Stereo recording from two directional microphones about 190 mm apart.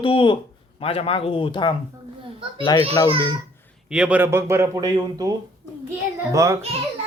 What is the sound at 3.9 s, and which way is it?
Speech, 5° right (ahead or behind).